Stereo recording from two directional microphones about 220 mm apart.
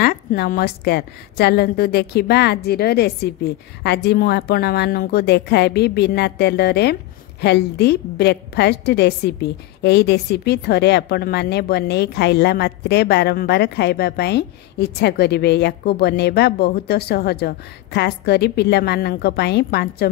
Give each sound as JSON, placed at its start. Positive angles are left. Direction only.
{"t": 0.0, "sound": "a woman's voice", "side_deg": 45}